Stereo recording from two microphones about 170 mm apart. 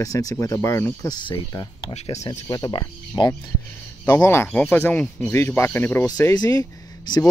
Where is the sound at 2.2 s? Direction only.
20° left (ahead or behind).